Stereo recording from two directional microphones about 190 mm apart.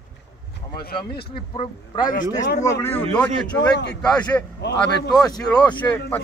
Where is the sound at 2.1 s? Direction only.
45° left (ahead or behind).